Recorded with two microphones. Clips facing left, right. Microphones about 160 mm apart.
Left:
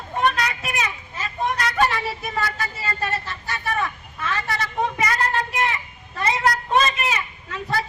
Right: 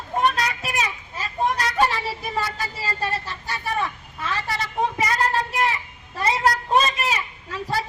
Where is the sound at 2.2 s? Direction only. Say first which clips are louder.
Left 1 dB; 30° right (ahead or behind).